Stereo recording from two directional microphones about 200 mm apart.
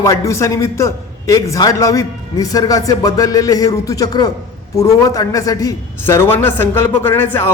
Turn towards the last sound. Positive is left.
turn(degrees=10)  # may be behind; listen again after turning